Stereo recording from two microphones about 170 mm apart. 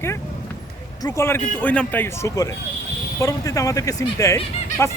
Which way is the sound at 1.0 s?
15° left (ahead or behind).